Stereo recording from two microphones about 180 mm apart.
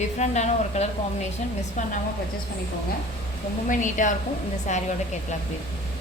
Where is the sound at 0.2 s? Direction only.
40° left (ahead or behind).